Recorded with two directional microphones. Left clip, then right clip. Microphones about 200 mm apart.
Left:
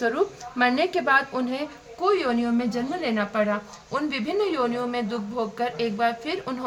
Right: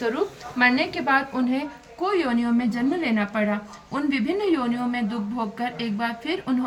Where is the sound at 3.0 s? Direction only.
20° left (ahead or behind).